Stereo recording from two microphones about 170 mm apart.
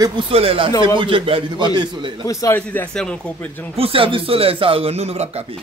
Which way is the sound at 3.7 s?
35° right (ahead or behind).